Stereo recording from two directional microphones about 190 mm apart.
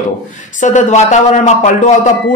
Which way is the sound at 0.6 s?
40° left (ahead or behind).